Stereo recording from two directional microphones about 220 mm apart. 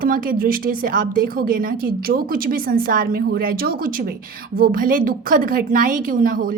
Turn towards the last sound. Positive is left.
turn(degrees=-40)  # may be behind; listen again after turning